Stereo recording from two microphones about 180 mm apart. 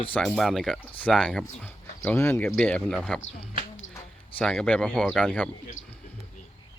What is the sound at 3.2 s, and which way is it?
Speech, 90° left.